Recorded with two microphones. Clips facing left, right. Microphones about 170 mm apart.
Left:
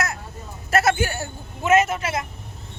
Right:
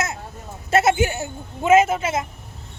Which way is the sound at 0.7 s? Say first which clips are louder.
Right 2 dB; 20° right (ahead or behind).